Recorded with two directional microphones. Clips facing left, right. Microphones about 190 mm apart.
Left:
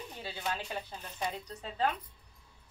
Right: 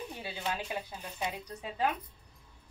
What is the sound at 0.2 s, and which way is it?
A woman's voice, 15° right (ahead or behind).